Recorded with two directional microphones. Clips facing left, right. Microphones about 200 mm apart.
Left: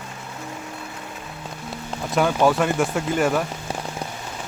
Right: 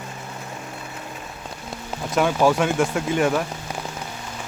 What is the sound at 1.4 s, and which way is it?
Rain on surface, centre (ahead or behind).